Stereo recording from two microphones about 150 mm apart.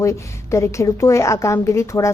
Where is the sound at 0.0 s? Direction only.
20° left (ahead or behind).